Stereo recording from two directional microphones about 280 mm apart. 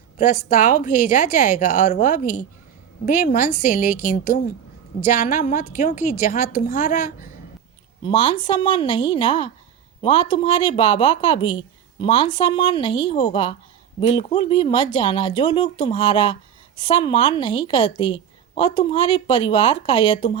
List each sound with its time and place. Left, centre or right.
0.2 s speech: left
8.0 s speech: centre